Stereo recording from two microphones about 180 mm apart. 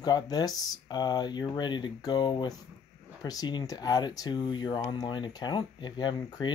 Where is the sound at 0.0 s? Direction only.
20° left (ahead or behind).